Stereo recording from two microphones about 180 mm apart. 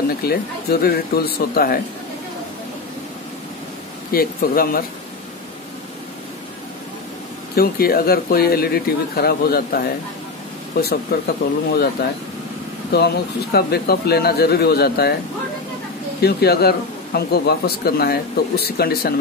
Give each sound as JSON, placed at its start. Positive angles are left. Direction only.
{"t": 0.3, "sound": "speech", "side_deg": 60}
{"t": 4.1, "sound": "speech", "side_deg": 55}
{"t": 7.5, "sound": "speech", "side_deg": 55}
{"t": 11.1, "sound": "speech", "side_deg": 60}
{"t": 16.2, "sound": "speech", "side_deg": 60}